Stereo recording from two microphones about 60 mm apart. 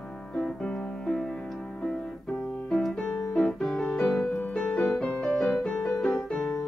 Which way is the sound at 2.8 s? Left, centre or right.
Centre.